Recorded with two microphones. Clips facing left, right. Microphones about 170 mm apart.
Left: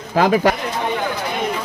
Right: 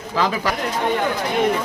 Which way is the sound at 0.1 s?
50° left (ahead or behind).